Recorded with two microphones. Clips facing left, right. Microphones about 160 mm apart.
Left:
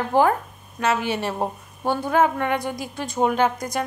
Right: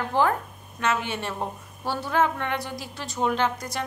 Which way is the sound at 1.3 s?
45° left (ahead or behind).